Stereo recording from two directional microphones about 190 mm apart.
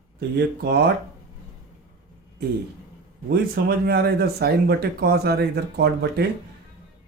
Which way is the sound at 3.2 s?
55° right (ahead or behind).